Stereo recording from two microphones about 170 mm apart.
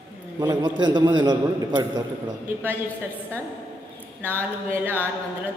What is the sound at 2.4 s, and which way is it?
Speech, 10° right (ahead or behind).